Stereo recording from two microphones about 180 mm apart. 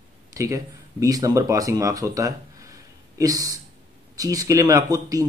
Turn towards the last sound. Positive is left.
turn(degrees=-20)  # may be behind; listen again after turning